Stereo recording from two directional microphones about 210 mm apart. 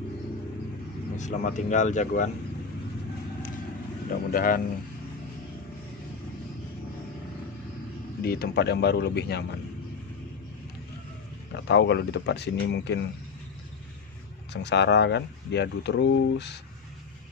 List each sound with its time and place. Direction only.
1.1 s speech: 35° left (ahead or behind)
4.1 s a man's voice: 45° left (ahead or behind)
8.2 s a man's voice: 50° left (ahead or behind)
11.5 s speech: 55° left (ahead or behind)
14.5 s speech: 55° left (ahead or behind)